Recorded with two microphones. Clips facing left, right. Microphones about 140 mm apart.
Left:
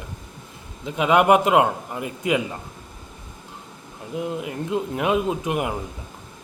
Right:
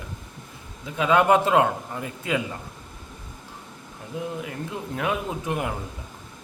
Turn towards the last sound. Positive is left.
turn(degrees=15)  # may be behind; listen again after turning